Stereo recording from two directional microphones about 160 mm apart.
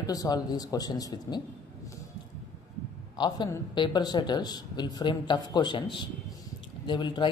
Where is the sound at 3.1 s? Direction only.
30° left (ahead or behind).